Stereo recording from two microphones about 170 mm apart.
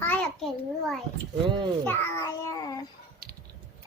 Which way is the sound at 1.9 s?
15° left (ahead or behind).